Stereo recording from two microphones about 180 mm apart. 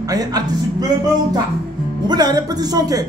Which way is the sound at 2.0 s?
20° right (ahead or behind).